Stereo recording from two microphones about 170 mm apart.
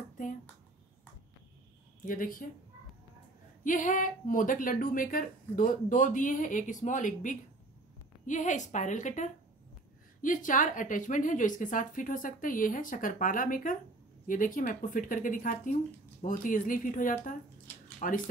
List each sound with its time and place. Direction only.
2.0 s a woman's voice: 55° left (ahead or behind)
3.6 s a woman's voice: 50° left (ahead or behind)